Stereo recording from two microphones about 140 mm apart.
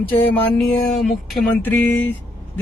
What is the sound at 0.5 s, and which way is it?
A man's voice, centre (ahead or behind).